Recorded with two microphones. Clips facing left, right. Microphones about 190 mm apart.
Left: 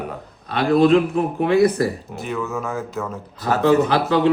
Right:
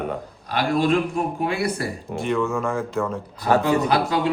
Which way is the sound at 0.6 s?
35° left (ahead or behind).